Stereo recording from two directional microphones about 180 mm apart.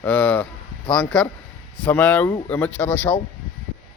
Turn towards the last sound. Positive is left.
turn(degrees=10)  # may be behind; listen again after turning